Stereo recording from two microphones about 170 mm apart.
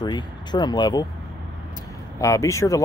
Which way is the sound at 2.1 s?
20° left (ahead or behind).